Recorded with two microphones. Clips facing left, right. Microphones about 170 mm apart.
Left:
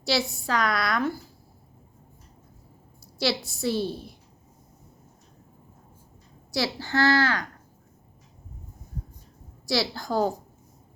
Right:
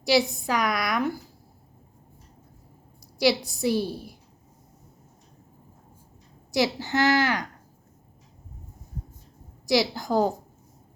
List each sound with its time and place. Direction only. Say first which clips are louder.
0.0 s a woman's voice: right 5 dB; 15° right (ahead or behind)
3.2 s a woman's voice: right 5 dB; 15° right (ahead or behind)
6.5 s a woman's voice: right 3 dB; 15° right (ahead or behind)
9.6 s a woman's voice: right 4 dB; 15° right (ahead or behind)